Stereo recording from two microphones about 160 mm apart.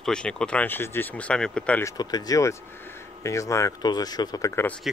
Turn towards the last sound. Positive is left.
turn(degrees=10)  # may be behind; listen again after turning